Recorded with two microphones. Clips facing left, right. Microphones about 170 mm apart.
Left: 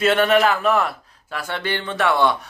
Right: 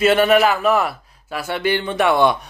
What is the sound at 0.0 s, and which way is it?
Speech, 5° right (ahead or behind).